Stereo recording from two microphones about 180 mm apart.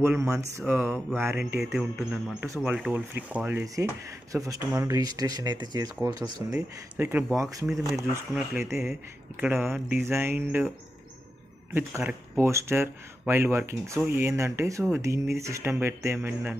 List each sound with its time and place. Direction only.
0.0 s speech: 15° right (ahead or behind)
1.6 s speech: centre (ahead or behind)
2.4 s speech: 15° right (ahead or behind)
7.6 s speech: 5° right (ahead or behind)
8.1 s speech: 15° right (ahead or behind)
11.7 s speech: 10° right (ahead or behind)